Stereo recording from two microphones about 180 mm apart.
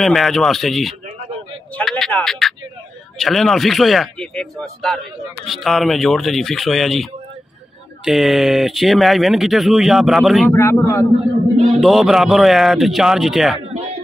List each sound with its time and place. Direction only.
0.0 s speech: centre (ahead or behind)
1.8 s a sound: 5° left (ahead or behind)
3.2 s speech: centre (ahead or behind)
10.5 s speech: 15° left (ahead or behind)
11.8 s speech: centre (ahead or behind)